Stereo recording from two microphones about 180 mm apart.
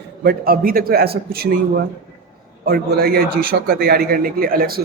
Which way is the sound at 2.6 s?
55° right (ahead or behind).